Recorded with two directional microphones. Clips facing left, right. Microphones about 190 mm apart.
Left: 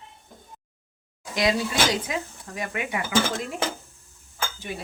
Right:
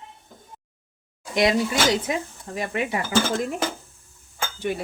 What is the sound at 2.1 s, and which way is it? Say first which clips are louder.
Speech: right 4 dB; 25° right (ahead or behind).